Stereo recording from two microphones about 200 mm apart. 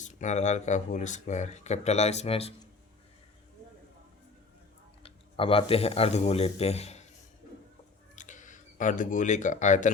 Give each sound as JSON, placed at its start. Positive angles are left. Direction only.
{"t": 0.0, "sound": "speech", "side_deg": 35}
{"t": 5.0, "sound": "speech", "side_deg": 30}
{"t": 8.1, "sound": "speech", "side_deg": 40}